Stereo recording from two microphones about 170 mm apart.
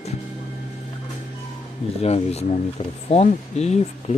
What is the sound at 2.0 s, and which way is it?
Speech, 40° left (ahead or behind).